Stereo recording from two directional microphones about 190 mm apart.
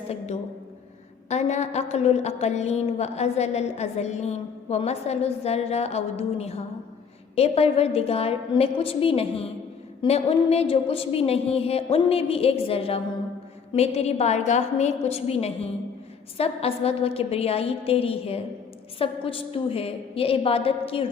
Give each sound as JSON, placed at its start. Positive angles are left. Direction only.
{"t": 1.3, "sound": "a woman's voice", "side_deg": 35}